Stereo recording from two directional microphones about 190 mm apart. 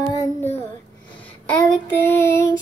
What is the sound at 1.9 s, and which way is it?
Child singing, 10° left (ahead or behind).